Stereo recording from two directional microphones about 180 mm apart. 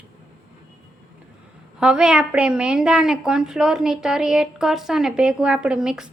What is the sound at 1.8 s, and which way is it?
A woman's voice, 5° right (ahead or behind).